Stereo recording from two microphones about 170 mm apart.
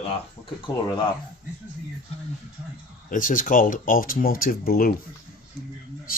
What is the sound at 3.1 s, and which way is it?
Speech, 50° left (ahead or behind).